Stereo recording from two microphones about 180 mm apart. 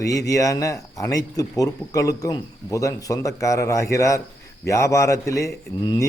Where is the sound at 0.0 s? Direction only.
20° left (ahead or behind).